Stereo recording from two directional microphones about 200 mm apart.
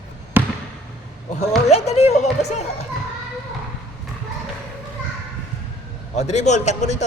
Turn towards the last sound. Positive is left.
turn(degrees=35)  # may be behind; listen again after turning